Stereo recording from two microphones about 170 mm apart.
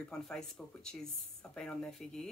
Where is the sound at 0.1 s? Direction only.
5° left (ahead or behind).